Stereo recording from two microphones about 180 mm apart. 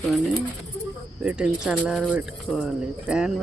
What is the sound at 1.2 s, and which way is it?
Speech, 5° right (ahead or behind).